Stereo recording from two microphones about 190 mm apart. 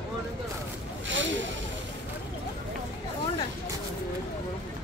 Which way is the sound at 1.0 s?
80° right.